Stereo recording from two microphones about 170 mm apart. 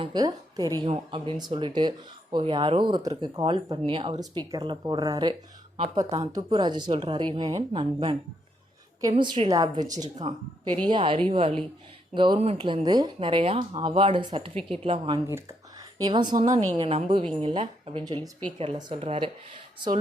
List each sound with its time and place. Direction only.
0.0 s a woman's voice: 25° right (ahead or behind)
15.3 s speech: 15° right (ahead or behind); by 19.3 s 35° right (ahead or behind)